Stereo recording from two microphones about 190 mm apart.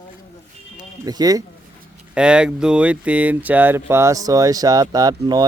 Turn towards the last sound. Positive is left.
turn(degrees=-20)  # may be behind; listen again after turning